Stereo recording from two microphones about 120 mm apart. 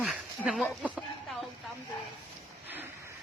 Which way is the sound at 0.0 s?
10° right (ahead or behind).